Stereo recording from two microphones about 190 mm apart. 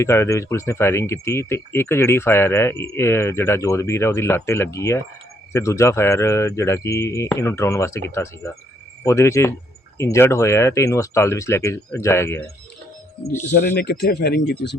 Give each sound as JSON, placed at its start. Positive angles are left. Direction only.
{"t": 0.0, "sound": "speech", "side_deg": 15}
{"t": 13.7, "sound": "speech", "side_deg": 60}